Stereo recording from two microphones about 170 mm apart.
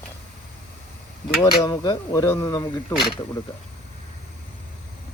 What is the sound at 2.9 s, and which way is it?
Speech, centre (ahead or behind).